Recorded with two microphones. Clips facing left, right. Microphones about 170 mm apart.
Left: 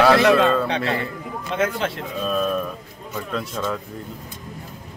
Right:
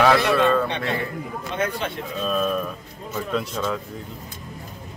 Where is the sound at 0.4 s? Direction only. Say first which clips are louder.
Left 1 dB; 90° left.